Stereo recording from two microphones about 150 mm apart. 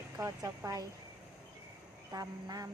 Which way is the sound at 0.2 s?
20° right (ahead or behind).